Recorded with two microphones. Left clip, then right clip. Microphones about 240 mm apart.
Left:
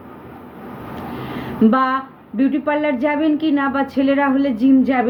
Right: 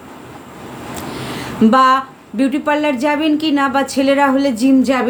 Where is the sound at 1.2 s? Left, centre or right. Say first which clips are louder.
Right 2 dB; centre.